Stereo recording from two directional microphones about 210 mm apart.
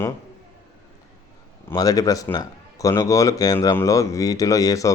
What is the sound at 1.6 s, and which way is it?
A man's voice, 15° left (ahead or behind).